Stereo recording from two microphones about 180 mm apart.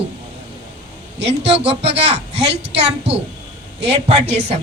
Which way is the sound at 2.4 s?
70° right (ahead or behind).